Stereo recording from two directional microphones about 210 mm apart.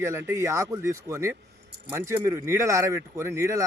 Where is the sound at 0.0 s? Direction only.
10° right (ahead or behind).